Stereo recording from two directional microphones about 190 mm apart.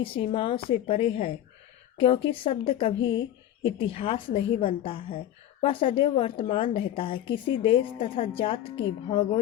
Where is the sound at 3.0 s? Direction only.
75° left (ahead or behind).